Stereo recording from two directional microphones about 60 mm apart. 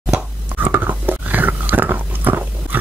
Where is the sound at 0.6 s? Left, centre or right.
Right.